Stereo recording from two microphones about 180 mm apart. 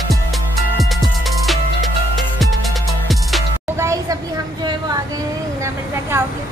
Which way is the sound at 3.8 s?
15° right (ahead or behind).